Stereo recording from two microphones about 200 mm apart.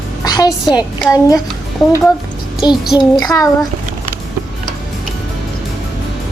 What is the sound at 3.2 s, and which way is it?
Speech, 20° left (ahead or behind).